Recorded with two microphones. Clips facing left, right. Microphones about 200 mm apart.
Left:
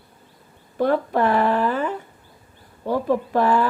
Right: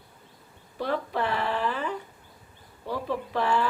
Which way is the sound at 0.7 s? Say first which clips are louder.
Left 9 dB; 50° left (ahead or behind).